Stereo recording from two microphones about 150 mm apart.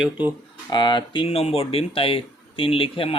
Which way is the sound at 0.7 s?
30° left (ahead or behind).